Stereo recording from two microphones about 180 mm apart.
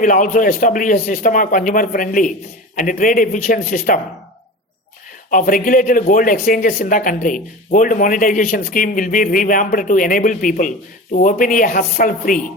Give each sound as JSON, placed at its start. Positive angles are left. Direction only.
{"t": 0.0, "sound": "speech", "side_deg": 45}
{"t": 5.3, "sound": "speech", "side_deg": 50}